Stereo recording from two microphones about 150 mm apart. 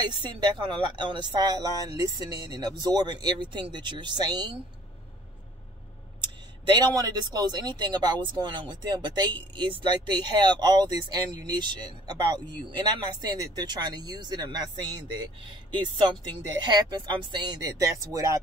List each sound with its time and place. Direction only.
0.0 s speech: 30° right (ahead or behind)
6.6 s speech: 30° right (ahead or behind)